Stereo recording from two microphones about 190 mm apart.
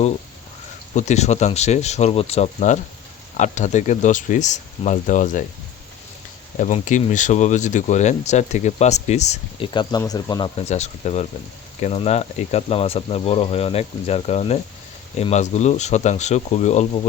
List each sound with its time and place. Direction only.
0.9 s speech: 35° left (ahead or behind)
6.6 s speech: 40° left (ahead or behind)
9.7 s speech: 20° left (ahead or behind)
10.7 s speech: 35° left (ahead or behind)